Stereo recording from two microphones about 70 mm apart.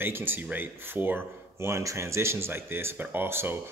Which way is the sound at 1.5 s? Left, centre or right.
Right.